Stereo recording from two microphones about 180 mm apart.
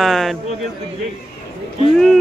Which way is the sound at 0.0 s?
Centre (ahead or behind).